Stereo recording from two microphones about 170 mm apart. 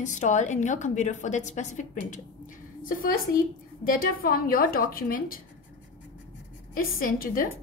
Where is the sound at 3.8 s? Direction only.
55° left (ahead or behind).